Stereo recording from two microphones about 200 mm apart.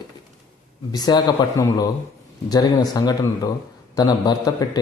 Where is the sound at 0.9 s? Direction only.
20° left (ahead or behind).